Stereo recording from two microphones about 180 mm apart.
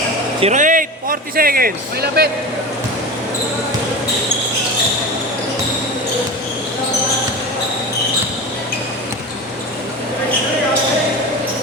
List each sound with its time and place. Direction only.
0.4 s a man's voice: 45° right (ahead or behind)